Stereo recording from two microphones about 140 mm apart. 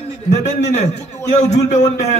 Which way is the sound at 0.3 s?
55° left (ahead or behind).